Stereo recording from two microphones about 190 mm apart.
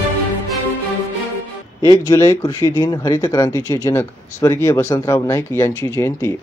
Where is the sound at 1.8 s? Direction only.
15° left (ahead or behind).